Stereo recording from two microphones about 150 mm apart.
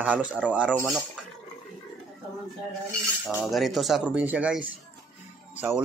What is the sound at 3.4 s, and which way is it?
Speech, centre (ahead or behind).